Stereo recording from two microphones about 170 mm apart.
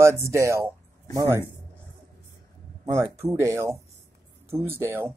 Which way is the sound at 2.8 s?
15° right (ahead or behind).